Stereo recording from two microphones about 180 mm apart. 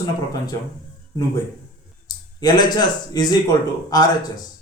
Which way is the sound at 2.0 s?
20° left (ahead or behind).